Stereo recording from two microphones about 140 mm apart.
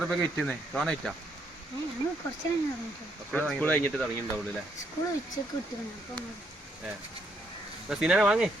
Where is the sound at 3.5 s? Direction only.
10° left (ahead or behind).